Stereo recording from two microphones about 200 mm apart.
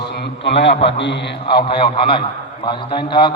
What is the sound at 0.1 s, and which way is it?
A man's voice, 60° left (ahead or behind).